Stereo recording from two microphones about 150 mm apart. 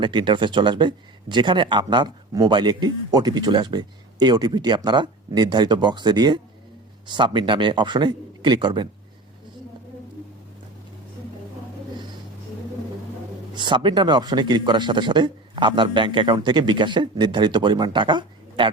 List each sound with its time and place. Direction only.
0.0 s speech: 35° right (ahead or behind)
13.5 s speech: 30° right (ahead or behind)